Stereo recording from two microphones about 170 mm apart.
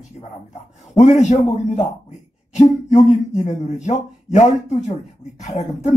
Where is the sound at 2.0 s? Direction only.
40° left (ahead or behind).